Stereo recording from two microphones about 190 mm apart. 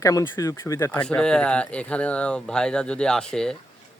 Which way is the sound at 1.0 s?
5° left (ahead or behind).